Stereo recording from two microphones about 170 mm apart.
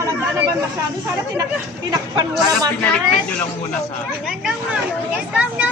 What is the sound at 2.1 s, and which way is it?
Speech, 25° right (ahead or behind).